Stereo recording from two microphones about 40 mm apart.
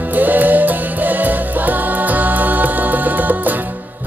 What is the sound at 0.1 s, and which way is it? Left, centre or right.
Music, right.